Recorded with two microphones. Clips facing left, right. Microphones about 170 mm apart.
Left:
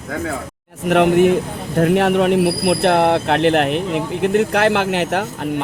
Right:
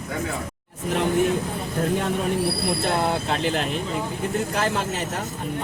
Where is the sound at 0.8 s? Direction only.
70° left (ahead or behind).